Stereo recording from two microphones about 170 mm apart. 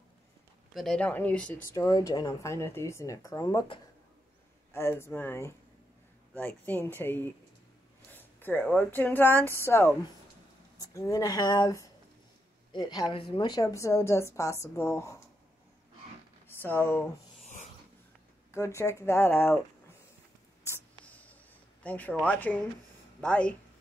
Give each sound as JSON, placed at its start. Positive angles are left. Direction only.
{"t": 0.7, "sound": "a woman's voice", "side_deg": 5}
{"t": 1.8, "sound": "speech", "side_deg": 20}
{"t": 4.7, "sound": "a woman's voice", "side_deg": 15}
{"t": 8.1, "sound": "a sound", "side_deg": 10}
{"t": 8.6, "sound": "a woman's voice", "side_deg": 10}
{"t": 16.4, "sound": "speech", "side_deg": 10}
{"t": 17.4, "sound": "rub", "side_deg": 45}
{"t": 18.5, "sound": "a woman's voice", "side_deg": 15}
{"t": 20.6, "sound": "a sound", "side_deg": 10}
{"t": 21.8, "sound": "a woman's voice", "side_deg": 10}